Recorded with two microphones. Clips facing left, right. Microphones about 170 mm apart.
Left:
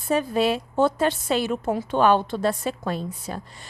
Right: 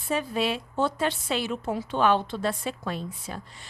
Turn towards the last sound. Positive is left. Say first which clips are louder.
# left 5 dB
turn(degrees=40)  # may be behind; listen again after turning